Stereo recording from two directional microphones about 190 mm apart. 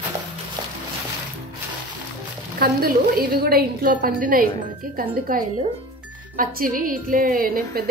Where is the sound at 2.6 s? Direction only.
50° right (ahead or behind).